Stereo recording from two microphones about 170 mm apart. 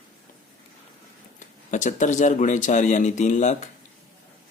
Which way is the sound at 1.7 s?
45° left (ahead or behind).